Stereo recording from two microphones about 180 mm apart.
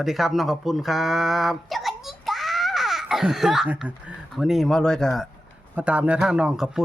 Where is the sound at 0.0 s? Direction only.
Centre (ahead or behind).